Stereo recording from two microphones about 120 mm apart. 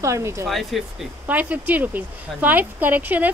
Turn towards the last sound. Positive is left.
turn(degrees=-15)  # may be behind; listen again after turning